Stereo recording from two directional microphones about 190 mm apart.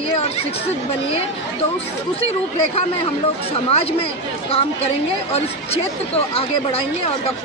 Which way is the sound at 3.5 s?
30° left (ahead or behind).